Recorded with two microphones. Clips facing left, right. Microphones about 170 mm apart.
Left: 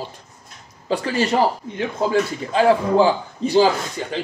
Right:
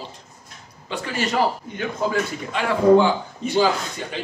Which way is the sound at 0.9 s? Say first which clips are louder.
Left 5 dB; 35° left (ahead or behind).